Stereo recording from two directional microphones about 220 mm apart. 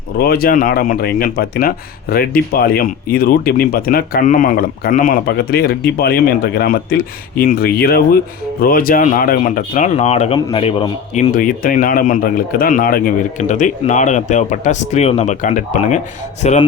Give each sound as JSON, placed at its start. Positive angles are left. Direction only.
{"t": 0.2, "sound": "speech", "side_deg": 45}